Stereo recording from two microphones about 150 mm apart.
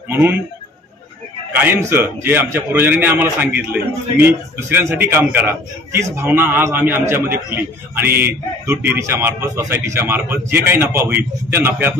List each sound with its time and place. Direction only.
0.1 s a man's voice: 15° right (ahead or behind)
1.5 s a man's voice: 15° right (ahead or behind)